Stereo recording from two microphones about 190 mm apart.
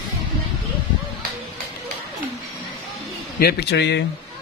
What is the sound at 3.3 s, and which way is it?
Speech, 60° left (ahead or behind).